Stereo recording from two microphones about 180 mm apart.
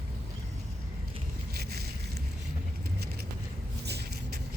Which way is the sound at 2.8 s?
60° right (ahead or behind).